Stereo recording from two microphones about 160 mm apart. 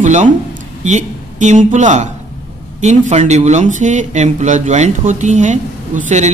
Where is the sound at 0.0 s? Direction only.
50° right (ahead or behind).